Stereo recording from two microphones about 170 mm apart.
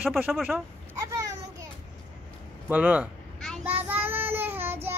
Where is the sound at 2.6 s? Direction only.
10° right (ahead or behind).